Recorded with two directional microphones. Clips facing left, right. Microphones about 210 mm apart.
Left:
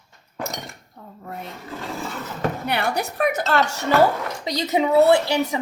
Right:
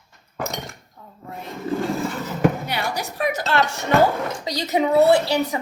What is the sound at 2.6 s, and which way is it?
Music, 60° left (ahead or behind).